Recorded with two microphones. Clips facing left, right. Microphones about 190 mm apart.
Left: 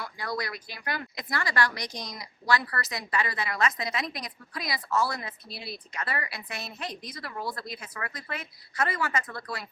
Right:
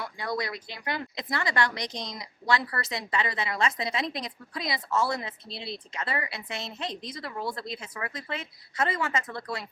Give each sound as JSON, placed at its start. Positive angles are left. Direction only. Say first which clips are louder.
{"t": 0.0, "sound": "speech", "louder": "right 2 dB", "side_deg": -20}